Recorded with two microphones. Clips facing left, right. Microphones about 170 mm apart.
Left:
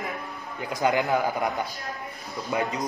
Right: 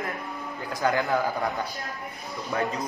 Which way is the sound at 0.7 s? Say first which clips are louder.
Left 1 dB; 20° left (ahead or behind).